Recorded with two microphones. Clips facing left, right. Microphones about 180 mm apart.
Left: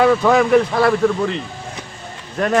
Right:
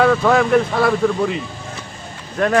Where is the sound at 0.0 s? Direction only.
Centre (ahead or behind).